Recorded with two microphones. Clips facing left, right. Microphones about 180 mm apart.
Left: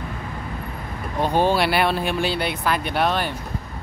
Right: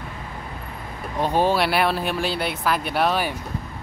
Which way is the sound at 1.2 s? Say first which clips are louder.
Left 1 dB; centre (ahead or behind).